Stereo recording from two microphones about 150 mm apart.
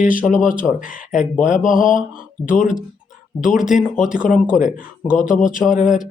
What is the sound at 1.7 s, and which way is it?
Speech, 60° left (ahead or behind).